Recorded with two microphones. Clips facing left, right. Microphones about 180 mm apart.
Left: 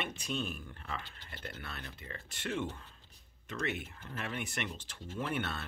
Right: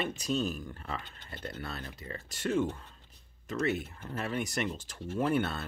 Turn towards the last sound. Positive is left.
turn(degrees=-40)  # may be behind; listen again after turning